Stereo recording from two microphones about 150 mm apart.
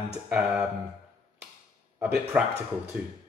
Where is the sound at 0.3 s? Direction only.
5° right (ahead or behind).